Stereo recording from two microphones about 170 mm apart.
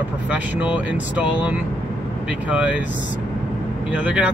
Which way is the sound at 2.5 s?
10° right (ahead or behind).